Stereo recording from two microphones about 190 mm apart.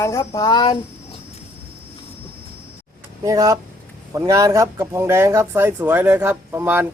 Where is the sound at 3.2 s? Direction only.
20° right (ahead or behind).